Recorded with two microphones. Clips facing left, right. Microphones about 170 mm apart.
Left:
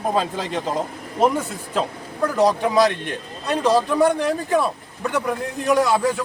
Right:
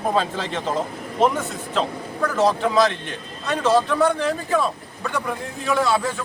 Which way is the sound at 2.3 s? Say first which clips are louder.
Left 1 dB; 15° left (ahead or behind).